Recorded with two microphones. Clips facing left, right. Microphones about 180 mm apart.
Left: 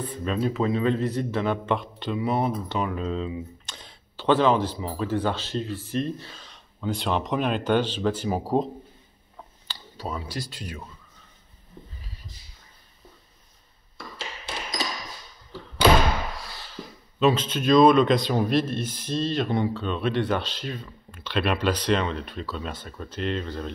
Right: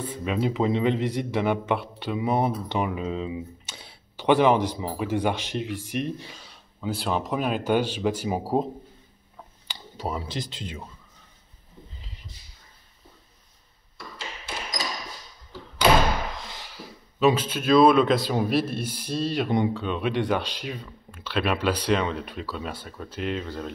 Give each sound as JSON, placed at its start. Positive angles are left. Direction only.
{"t": 0.0, "sound": "a man's voice", "side_deg": -10}
{"t": 9.7, "sound": "speech", "side_deg": -20}
{"t": 12.0, "sound": "a sound", "side_deg": -20}
{"t": 16.3, "sound": "a man's voice", "side_deg": -20}